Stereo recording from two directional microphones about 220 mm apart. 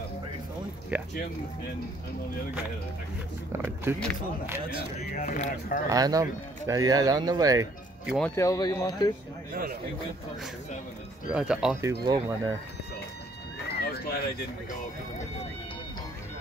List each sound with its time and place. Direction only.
0.9 s speech: 5° right (ahead or behind)
3.5 s speech: 10° right (ahead or behind)
4.7 s speech: 35° left (ahead or behind)
5.9 s speech: 15° right (ahead or behind)
8.2 s speech: 15° left (ahead or behind)
9.5 s a man's voice: 40° right (ahead or behind)
11.2 s speech: 5° right (ahead or behind)
11.8 s speech: 15° right (ahead or behind)
13.7 s run: 45° left (ahead or behind)